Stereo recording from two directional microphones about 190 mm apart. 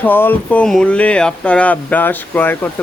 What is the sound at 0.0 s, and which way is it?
Speech, 10° left (ahead or behind).